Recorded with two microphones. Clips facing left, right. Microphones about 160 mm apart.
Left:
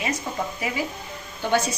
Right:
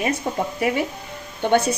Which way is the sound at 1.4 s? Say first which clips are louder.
Right 5 dB; 55° right (ahead or behind).